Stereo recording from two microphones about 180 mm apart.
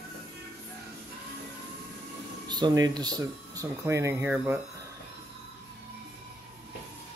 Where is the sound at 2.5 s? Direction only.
20° right (ahead or behind).